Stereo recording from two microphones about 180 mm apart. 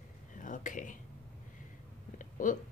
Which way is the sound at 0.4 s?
45° left (ahead or behind).